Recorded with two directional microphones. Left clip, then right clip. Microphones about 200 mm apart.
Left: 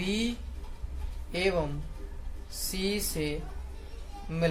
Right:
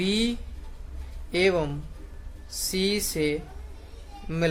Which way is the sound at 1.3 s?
50° right (ahead or behind).